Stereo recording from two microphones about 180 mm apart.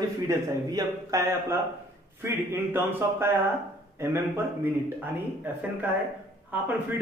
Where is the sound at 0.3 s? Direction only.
20° right (ahead or behind).